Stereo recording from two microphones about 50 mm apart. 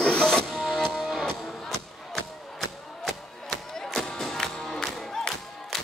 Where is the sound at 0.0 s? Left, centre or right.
Centre.